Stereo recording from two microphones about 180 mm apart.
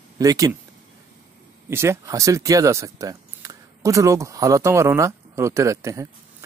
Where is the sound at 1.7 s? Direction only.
15° right (ahead or behind).